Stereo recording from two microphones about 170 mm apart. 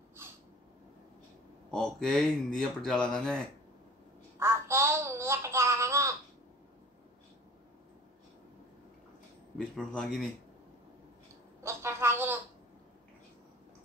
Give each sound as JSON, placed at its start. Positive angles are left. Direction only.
{"t": 1.7, "sound": "speech", "side_deg": 5}
{"t": 4.4, "sound": "babbling", "side_deg": -15}
{"t": 9.6, "sound": "speech", "side_deg": 5}
{"t": 11.6, "sound": "a sound", "side_deg": -15}